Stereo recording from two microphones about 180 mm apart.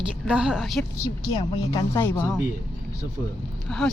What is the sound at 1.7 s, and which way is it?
Speech, 15° left (ahead or behind).